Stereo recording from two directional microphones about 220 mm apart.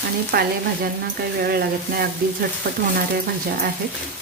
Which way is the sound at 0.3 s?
45° right (ahead or behind).